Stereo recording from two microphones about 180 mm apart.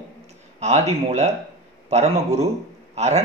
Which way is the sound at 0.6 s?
40° right (ahead or behind).